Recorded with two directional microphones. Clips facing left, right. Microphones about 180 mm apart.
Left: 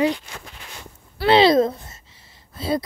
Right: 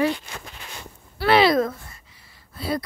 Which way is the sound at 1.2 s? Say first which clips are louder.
Left 3 dB; 25° left (ahead or behind).